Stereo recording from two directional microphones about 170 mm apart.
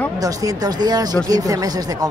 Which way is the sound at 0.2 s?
20° right (ahead or behind).